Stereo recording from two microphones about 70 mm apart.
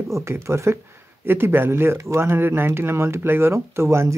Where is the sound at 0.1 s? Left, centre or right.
Right.